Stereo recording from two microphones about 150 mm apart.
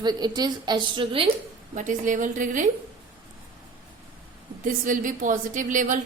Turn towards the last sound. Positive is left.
turn(degrees=-60)  # may be behind; listen again after turning